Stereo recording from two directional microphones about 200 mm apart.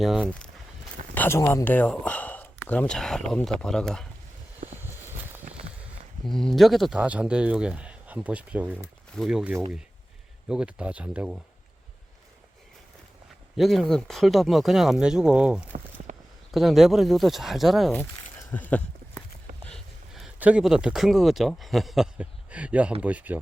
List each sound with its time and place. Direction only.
0.0 s speech: centre (ahead or behind)
6.2 s speech: centre (ahead or behind)
13.6 s speech: centre (ahead or behind)
16.1 s a sound: 40° right (ahead or behind)
16.5 s speech: centre (ahead or behind)
18.5 s a sound: 10° left (ahead or behind)
19.6 s speech: centre (ahead or behind)